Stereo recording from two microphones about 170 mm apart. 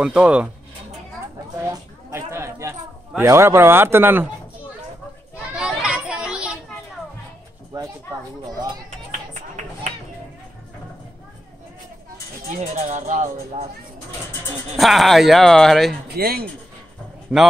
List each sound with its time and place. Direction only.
0.0 s speech: 5° right (ahead or behind)
1.7 s chatter: 15° right (ahead or behind)
3.2 s speech: 15° right (ahead or behind)
5.5 s children playing: 5° right (ahead or behind)
7.7 s a sound: 20° right (ahead or behind)
12.7 s music: 45° right (ahead or behind)
14.8 s speech: centre (ahead or behind)
16.2 s speech: 65° right (ahead or behind)
17.3 s speech: 5° right (ahead or behind)